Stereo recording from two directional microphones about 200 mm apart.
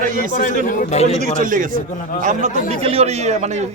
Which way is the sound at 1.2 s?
40° right (ahead or behind).